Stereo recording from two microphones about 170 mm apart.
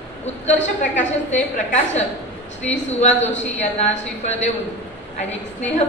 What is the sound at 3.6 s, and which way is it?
Speech, 40° left (ahead or behind).